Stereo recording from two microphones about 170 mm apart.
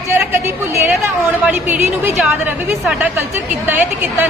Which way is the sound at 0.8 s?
10° right (ahead or behind).